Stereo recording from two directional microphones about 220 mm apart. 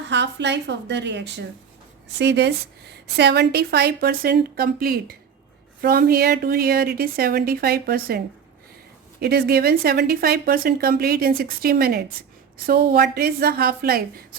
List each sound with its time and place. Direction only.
0.1 s speech: 55° right (ahead or behind)
9.2 s speech: 45° right (ahead or behind)